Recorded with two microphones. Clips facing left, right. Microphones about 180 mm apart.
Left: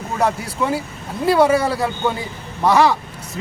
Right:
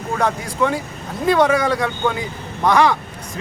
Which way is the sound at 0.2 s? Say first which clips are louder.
Even; 5° left (ahead or behind).